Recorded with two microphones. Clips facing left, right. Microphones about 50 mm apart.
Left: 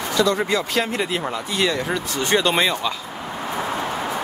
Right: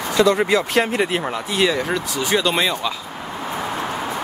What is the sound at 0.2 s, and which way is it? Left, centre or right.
Speech, centre.